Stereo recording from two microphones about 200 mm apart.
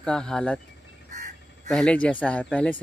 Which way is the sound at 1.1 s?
40° right (ahead or behind).